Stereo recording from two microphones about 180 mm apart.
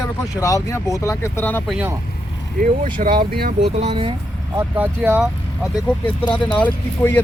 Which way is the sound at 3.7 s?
35° right (ahead or behind).